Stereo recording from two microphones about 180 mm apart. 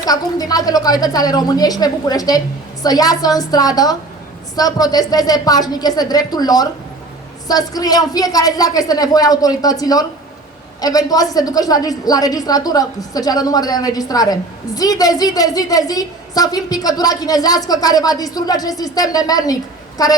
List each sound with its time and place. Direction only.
0.0 s a woman's voice: 20° left (ahead or behind)